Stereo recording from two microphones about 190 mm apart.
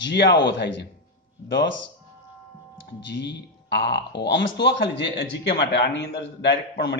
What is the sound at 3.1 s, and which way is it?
A man's voice, 65° left (ahead or behind).